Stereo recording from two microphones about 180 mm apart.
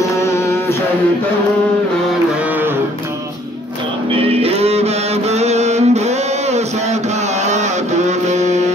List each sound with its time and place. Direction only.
0.1 s mantra: 15° left (ahead or behind)
4.1 s music: 30° right (ahead or behind)